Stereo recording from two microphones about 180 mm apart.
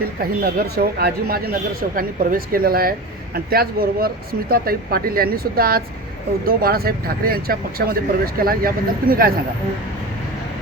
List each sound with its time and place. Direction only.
0.2 s speech: 55° right (ahead or behind)